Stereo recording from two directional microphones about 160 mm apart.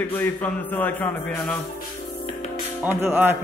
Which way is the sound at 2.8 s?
15° right (ahead or behind).